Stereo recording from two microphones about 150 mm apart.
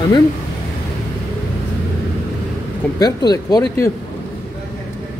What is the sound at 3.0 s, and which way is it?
Speech, 25° left (ahead or behind).